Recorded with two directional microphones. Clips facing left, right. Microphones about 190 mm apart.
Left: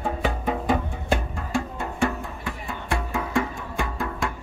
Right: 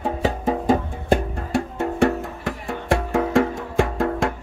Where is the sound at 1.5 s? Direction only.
70° right (ahead or behind).